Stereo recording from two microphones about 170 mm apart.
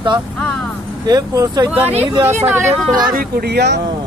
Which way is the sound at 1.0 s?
20° right (ahead or behind).